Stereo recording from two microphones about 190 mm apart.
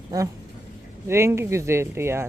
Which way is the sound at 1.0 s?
15° right (ahead or behind).